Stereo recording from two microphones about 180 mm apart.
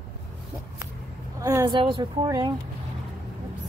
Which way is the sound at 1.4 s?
15° right (ahead or behind).